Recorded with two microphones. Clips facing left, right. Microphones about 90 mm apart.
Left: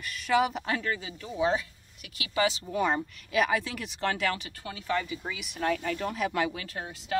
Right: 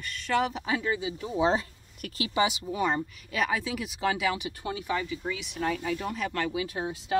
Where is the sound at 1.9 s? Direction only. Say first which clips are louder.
Right 12 dB; 45° right (ahead or behind).